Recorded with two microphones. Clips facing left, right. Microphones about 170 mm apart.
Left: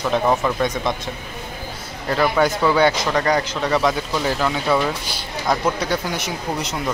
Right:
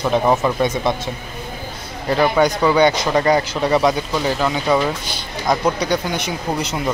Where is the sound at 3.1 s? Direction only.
20° right (ahead or behind).